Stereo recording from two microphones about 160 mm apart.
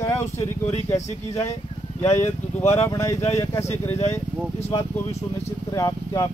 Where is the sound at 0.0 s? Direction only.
20° left (ahead or behind).